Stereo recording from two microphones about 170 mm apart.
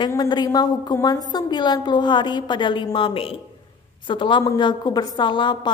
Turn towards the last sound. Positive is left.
turn(degrees=25)  # may be behind; listen again after turning